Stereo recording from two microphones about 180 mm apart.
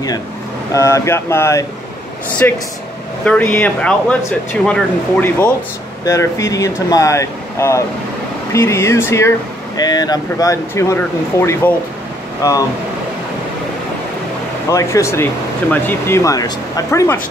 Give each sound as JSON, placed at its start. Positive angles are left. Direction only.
{"t": 0.7, "sound": "speech", "side_deg": 15}
{"t": 14.7, "sound": "speech", "side_deg": 15}